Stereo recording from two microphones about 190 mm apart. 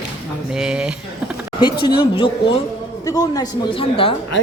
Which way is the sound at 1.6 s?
25° left (ahead or behind).